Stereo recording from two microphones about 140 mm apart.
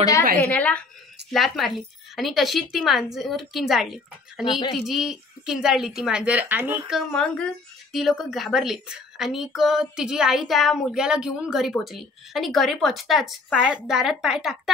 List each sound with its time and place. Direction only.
0.4 s a woman's voice: 10° left (ahead or behind)
4.5 s speech: 30° left (ahead or behind)
4.7 s a woman's voice: 5° right (ahead or behind)
7.0 s a woman's voice: 5° left (ahead or behind)